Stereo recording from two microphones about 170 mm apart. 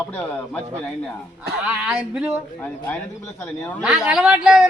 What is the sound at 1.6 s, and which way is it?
Speech, 5° right (ahead or behind).